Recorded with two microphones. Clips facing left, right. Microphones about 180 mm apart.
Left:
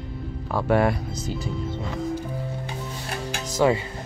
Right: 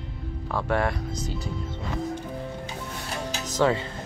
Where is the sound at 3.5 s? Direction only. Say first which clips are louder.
Left 3 dB; 10° left (ahead or behind).